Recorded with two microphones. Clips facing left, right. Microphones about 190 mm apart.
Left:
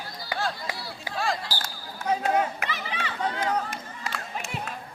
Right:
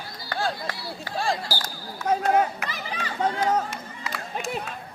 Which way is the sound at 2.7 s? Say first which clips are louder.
Even; 40° right (ahead or behind).